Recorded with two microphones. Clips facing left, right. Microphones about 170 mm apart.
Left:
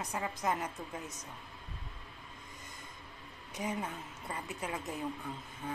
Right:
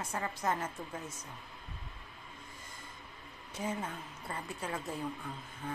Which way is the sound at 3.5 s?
15° left (ahead or behind).